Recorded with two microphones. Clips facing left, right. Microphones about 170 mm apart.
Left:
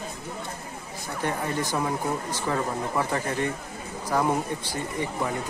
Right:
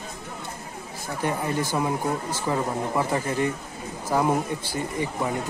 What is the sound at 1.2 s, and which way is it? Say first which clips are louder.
Speech: right 2 dB; 10° right (ahead or behind).